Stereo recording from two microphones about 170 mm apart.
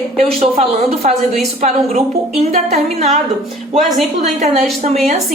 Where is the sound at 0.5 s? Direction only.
35° right (ahead or behind).